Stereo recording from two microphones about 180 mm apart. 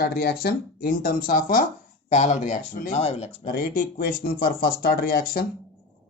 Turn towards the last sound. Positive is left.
turn(degrees=55)  # may be behind; listen again after turning